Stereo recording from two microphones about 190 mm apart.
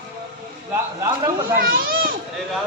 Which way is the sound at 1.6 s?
50° right (ahead or behind).